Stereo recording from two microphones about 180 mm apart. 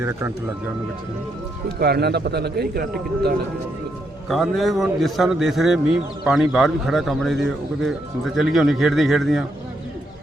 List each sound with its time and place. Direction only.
0.0 s speech: 15° right (ahead or behind)
1.8 s a man's voice: 65° right (ahead or behind)
4.3 s a man's voice: centre (ahead or behind)